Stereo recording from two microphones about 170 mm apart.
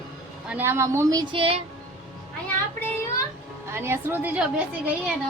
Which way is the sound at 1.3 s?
30° right (ahead or behind).